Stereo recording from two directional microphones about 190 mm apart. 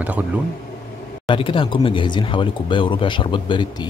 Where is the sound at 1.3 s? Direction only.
25° left (ahead or behind).